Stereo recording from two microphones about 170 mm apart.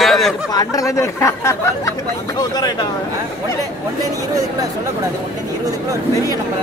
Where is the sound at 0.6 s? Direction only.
20° left (ahead or behind).